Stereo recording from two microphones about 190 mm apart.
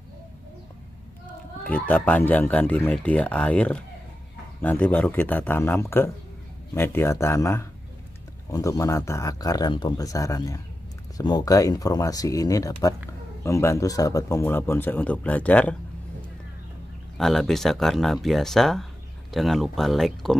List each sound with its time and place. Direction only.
1.6 s speech: 10° left (ahead or behind)
17.2 s speech: centre (ahead or behind)